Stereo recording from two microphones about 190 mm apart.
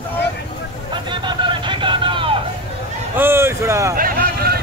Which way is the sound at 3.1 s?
10° right (ahead or behind).